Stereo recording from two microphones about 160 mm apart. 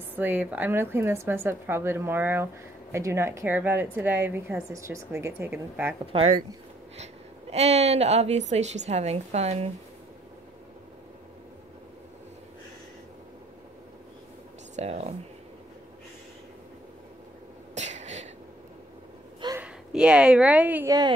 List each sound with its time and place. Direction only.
0.1 s speech: 10° right (ahead or behind)
7.0 s a woman's voice: 40° right (ahead or behind)
14.8 s a woman's voice: 45° right (ahead or behind)
17.7 s a sound: 45° right (ahead or behind)
19.6 s speech: 5° right (ahead or behind)